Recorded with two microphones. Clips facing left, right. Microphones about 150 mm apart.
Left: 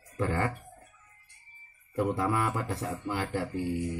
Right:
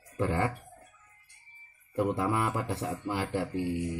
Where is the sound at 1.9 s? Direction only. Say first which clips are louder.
Even; 15° right (ahead or behind).